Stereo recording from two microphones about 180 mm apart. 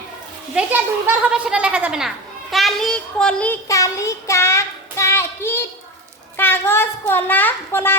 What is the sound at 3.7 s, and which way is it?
Child singing, 15° left (ahead or behind).